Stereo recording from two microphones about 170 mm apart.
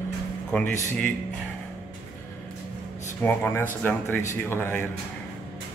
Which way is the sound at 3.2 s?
10° left (ahead or behind).